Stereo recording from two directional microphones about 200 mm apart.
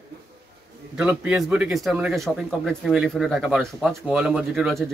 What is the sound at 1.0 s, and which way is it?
A man's voice, 5° right (ahead or behind).